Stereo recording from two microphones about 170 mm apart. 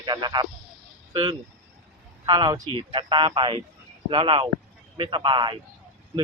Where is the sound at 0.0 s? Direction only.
25° right (ahead or behind).